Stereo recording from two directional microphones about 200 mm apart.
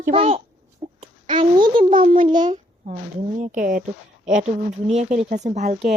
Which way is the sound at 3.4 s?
40° right (ahead or behind).